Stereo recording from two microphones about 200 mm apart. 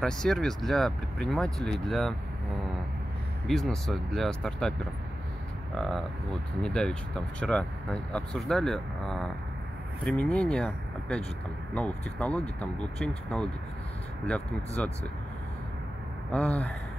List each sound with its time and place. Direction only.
0.0 s speech: 5° left (ahead or behind)
3.4 s speech: centre (ahead or behind)
5.8 s speech: centre (ahead or behind)
14.8 s speech: 5° left (ahead or behind)
16.3 s speech: 5° left (ahead or behind)